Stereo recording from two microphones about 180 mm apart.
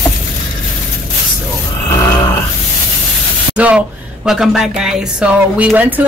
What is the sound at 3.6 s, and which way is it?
Speech, 5° right (ahead or behind).